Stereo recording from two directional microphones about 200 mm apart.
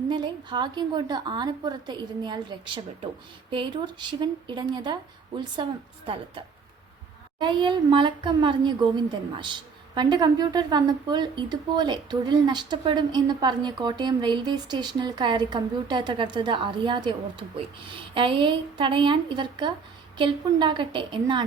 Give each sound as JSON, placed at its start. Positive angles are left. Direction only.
{"t": 0.1, "sound": "a woman's voice", "side_deg": -20}
{"t": 7.3, "sound": "a woman's voice", "side_deg": -25}